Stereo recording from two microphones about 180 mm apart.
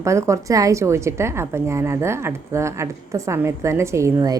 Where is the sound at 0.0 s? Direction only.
15° right (ahead or behind).